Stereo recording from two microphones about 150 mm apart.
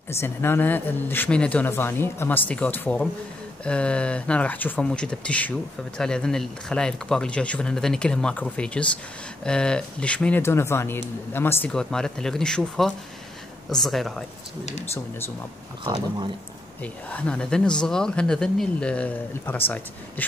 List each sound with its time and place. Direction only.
0.1 s speech: 15° left (ahead or behind)
11.7 s speech: 5° left (ahead or behind)
14.6 s speech: 45° left (ahead or behind)
15.8 s speech: 30° right (ahead or behind)
16.8 s speech: 10° left (ahead or behind)